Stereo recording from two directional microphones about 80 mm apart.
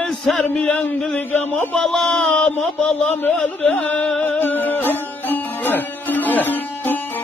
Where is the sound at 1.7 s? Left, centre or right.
Centre.